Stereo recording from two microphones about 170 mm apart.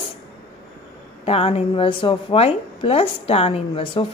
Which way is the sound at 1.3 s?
35° left (ahead or behind).